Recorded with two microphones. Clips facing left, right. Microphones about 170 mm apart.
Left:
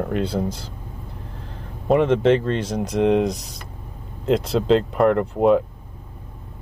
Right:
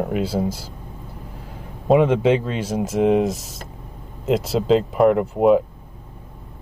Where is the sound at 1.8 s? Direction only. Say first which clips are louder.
Right 1 dB; 10° right (ahead or behind).